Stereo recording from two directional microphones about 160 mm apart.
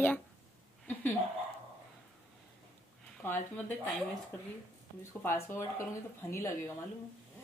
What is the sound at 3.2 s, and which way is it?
Speech, 15° left (ahead or behind).